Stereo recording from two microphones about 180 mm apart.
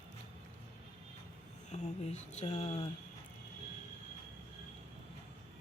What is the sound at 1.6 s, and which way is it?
Speech, 40° left (ahead or behind).